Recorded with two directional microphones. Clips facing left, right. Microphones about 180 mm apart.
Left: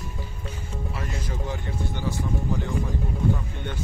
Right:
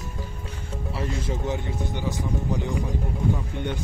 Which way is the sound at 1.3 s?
20° right (ahead or behind).